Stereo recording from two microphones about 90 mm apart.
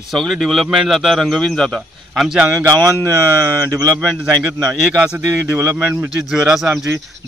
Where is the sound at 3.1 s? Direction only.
35° right (ahead or behind).